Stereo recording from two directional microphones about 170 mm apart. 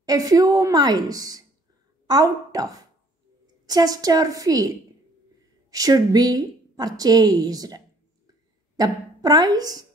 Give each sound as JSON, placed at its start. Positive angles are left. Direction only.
{"t": 0.0, "sound": "a woman's voice", "side_deg": -20}